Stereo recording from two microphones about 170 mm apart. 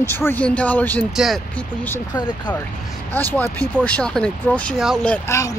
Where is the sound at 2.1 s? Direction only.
25° left (ahead or behind).